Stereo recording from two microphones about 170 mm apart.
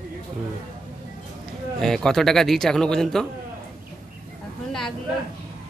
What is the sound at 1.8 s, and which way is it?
Speech, 5° left (ahead or behind).